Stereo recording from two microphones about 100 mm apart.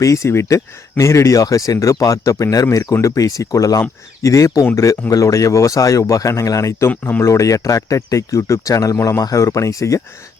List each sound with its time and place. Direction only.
0.0 s speech: 30° left (ahead or behind)